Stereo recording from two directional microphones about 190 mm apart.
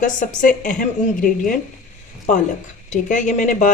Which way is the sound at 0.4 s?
45° left (ahead or behind).